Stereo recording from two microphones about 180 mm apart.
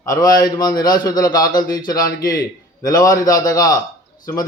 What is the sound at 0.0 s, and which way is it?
Speech, 20° left (ahead or behind).